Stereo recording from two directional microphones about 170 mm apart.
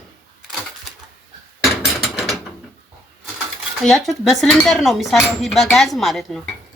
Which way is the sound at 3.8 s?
Centre (ahead or behind).